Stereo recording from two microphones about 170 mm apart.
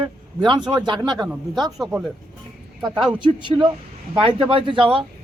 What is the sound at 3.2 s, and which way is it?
Speech, 30° right (ahead or behind).